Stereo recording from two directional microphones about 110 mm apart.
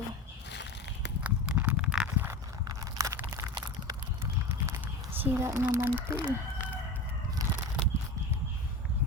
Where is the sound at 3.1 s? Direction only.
25° right (ahead or behind).